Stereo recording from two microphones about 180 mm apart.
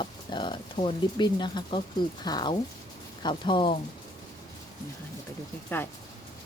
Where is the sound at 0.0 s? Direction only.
25° left (ahead or behind).